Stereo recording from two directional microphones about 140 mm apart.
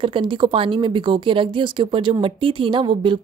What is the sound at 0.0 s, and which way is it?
Speech, 35° right (ahead or behind).